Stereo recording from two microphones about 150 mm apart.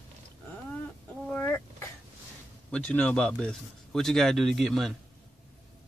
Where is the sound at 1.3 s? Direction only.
15° left (ahead or behind).